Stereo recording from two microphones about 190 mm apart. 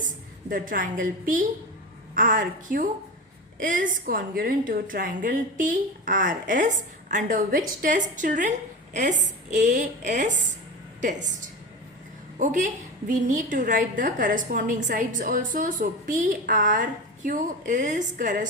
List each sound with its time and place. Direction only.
0.5 s a woman's voice: 45° right (ahead or behind)
2.1 s a woman's voice: 45° right (ahead or behind)